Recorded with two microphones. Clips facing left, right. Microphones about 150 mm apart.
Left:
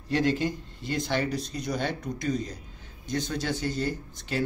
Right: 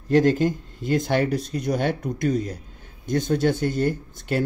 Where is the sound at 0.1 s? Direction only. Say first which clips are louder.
Right 7 dB; 50° right (ahead or behind).